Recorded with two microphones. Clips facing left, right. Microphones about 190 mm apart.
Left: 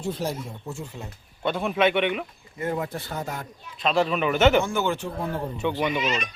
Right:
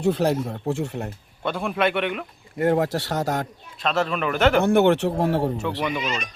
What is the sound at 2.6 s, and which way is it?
Speech, 70° right (ahead or behind).